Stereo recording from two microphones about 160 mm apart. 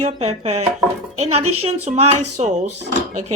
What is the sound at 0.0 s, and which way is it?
Speech, 45° right (ahead or behind).